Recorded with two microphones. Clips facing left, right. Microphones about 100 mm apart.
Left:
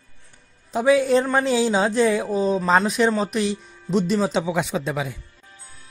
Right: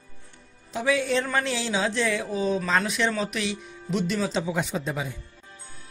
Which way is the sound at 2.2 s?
Centre (ahead or behind).